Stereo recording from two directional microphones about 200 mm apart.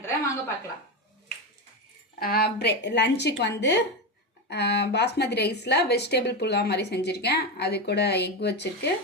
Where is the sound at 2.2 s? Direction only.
50° left (ahead or behind).